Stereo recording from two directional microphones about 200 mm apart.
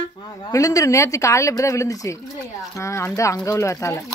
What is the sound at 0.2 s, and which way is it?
Speech, 15° left (ahead or behind).